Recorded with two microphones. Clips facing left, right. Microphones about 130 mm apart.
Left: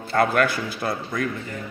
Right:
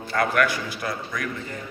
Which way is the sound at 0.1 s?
30° left (ahead or behind).